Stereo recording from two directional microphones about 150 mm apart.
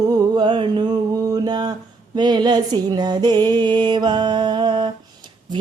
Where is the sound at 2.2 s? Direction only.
30° right (ahead or behind).